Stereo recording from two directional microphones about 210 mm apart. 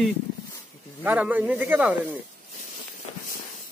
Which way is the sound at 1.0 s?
10° right (ahead or behind).